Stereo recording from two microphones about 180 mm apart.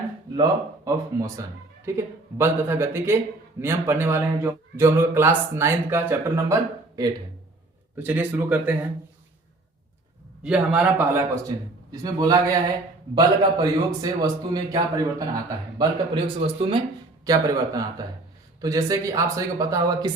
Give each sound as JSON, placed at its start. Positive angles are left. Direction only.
{"t": 0.9, "sound": "a man's voice", "side_deg": -15}
{"t": 10.4, "sound": "a man's voice", "side_deg": -5}
{"t": 11.9, "sound": "a man's voice", "side_deg": -20}
{"t": 17.2, "sound": "a man's voice", "side_deg": -20}